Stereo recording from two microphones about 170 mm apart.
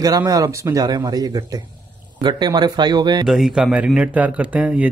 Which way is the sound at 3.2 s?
Centre (ahead or behind).